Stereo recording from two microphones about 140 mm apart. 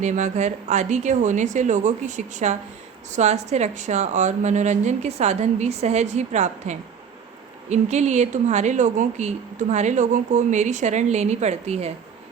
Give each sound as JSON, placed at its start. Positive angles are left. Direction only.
{"t": 0.0, "sound": "speech", "side_deg": -60}